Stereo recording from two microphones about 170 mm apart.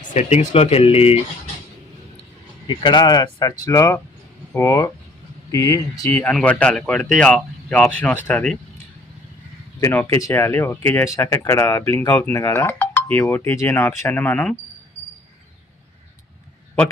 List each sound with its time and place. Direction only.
0.0 s speech: 45° left (ahead or behind)
2.6 s speech: 30° left (ahead or behind); by 8.5 s 10° left (ahead or behind)
9.8 s speech: 15° left (ahead or behind)
16.8 s speech: 5° left (ahead or behind)